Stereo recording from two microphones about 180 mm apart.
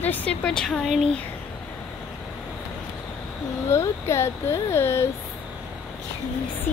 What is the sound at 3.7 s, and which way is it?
Speech, 15° left (ahead or behind).